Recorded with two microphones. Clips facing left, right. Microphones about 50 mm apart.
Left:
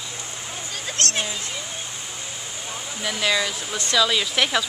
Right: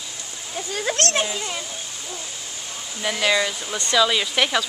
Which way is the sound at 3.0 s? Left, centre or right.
Centre.